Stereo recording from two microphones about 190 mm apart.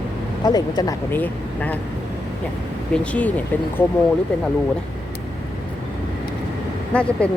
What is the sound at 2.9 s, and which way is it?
Speech, 5° left (ahead or behind).